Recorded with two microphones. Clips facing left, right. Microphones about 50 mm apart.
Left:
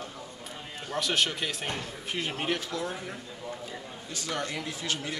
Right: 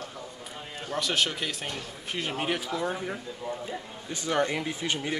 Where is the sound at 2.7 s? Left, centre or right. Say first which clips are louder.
Right 4 dB; centre.